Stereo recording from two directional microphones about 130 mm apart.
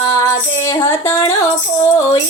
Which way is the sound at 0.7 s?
25° left (ahead or behind).